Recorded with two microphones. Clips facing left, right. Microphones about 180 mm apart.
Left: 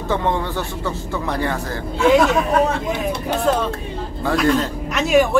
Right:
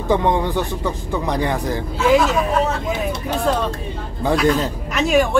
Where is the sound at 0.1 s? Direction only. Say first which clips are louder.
Right 4 dB; 15° right (ahead or behind).